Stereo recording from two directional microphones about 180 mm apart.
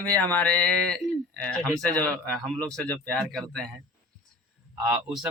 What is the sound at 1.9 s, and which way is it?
Speech, 5° left (ahead or behind).